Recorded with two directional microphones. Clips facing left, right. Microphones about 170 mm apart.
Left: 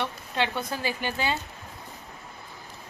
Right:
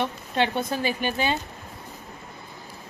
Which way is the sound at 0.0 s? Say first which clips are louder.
Right 4 dB; 20° right (ahead or behind).